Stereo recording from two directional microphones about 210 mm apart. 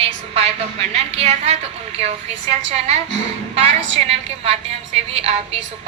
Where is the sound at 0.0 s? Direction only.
30° right (ahead or behind).